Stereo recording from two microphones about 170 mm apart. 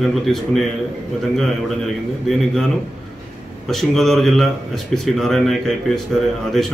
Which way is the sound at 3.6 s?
Centre (ahead or behind).